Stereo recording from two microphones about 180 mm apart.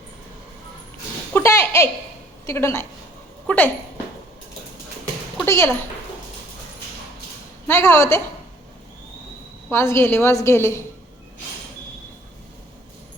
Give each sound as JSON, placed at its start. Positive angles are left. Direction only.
{"t": 1.3, "sound": "a sound", "side_deg": 15}
{"t": 2.5, "sound": "a woman's voice", "side_deg": 15}
{"t": 5.5, "sound": "a woman's voice", "side_deg": 15}
{"t": 7.7, "sound": "a woman's voice", "side_deg": 15}
{"t": 9.6, "sound": "a woman's voice", "side_deg": 15}